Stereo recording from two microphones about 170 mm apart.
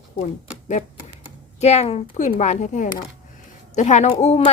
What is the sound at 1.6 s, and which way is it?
Speech, 40° left (ahead or behind).